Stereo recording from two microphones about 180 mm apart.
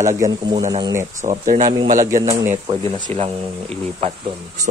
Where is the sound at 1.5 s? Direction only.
20° right (ahead or behind).